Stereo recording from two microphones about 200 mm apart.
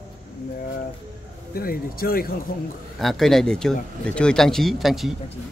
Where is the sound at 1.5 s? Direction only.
45° left (ahead or behind).